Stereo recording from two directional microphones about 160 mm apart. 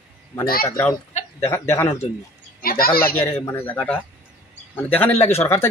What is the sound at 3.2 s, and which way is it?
Speech, 15° left (ahead or behind).